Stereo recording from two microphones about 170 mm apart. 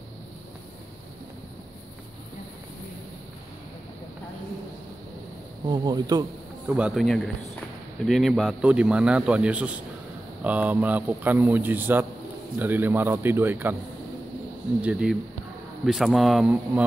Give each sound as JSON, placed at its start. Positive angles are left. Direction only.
{"t": 5.7, "sound": "speech", "side_deg": -25}
{"t": 6.7, "sound": "a man's voice", "side_deg": -5}
{"t": 14.8, "sound": "a man's voice", "side_deg": -5}